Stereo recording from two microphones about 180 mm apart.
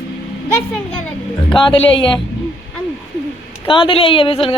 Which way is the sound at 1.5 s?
25° left (ahead or behind).